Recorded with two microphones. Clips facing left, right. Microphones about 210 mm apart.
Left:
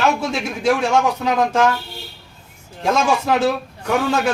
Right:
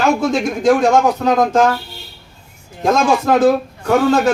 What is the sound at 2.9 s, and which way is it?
Speech, 45° right (ahead or behind).